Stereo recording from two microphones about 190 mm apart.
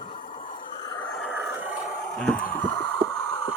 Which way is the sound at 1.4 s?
10° right (ahead or behind).